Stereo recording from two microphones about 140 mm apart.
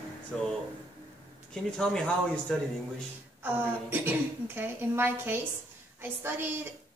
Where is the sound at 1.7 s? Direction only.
5° left (ahead or behind).